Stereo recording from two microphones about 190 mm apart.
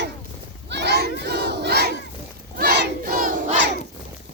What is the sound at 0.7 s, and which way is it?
Battle cry, 65° right (ahead or behind).